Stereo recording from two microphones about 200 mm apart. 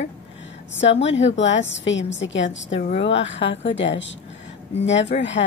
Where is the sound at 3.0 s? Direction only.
65° left (ahead or behind).